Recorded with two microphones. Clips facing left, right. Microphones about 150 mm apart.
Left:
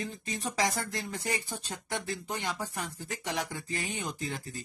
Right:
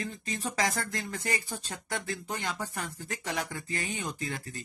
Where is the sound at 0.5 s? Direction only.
Centre (ahead or behind).